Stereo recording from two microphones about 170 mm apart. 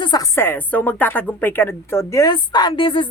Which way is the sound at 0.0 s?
20° left (ahead or behind).